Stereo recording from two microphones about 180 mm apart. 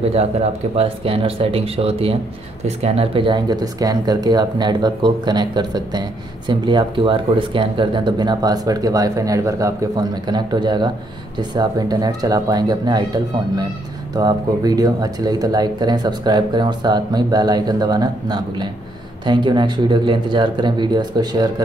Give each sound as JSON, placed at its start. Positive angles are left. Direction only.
{"t": 0.1, "sound": "speech", "side_deg": -35}